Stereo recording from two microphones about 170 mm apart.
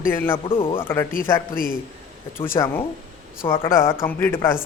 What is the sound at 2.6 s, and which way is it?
A woman's voice, 25° left (ahead or behind).